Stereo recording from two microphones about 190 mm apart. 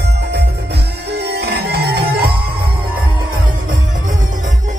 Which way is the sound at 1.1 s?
60° right (ahead or behind).